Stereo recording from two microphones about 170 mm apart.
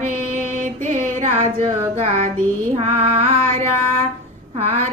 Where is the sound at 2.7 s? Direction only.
35° right (ahead or behind).